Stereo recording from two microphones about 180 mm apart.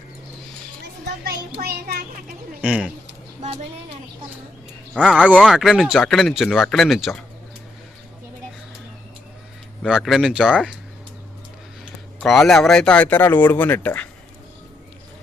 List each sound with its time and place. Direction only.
1.6 s a child's voice: 60° right (ahead or behind)
3.1 s a sound: 35° right (ahead or behind)
4.9 s speech: 5° right (ahead or behind)
9.8 s speech: centre (ahead or behind)
12.2 s speech: centre (ahead or behind)